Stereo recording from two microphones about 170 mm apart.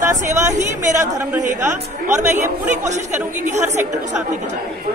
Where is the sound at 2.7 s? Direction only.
45° right (ahead or behind).